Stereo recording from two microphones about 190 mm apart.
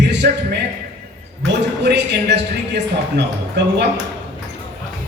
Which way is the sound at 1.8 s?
65° right (ahead or behind).